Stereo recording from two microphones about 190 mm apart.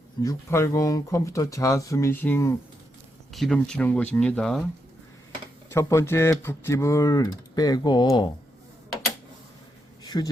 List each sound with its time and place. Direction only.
0.2 s speech: 15° left (ahead or behind)
3.3 s speech: centre (ahead or behind)
5.6 s speech: 15° left (ahead or behind)
10.0 s a sound: 20° left (ahead or behind)